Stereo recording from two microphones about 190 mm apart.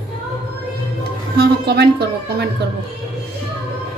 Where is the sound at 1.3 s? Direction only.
55° right (ahead or behind).